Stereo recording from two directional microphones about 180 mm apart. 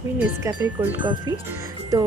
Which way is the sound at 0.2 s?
15° right (ahead or behind).